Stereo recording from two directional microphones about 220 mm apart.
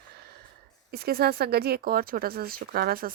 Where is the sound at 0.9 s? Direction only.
45° right (ahead or behind).